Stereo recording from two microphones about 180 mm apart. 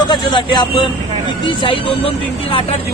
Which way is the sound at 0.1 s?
25° left (ahead or behind).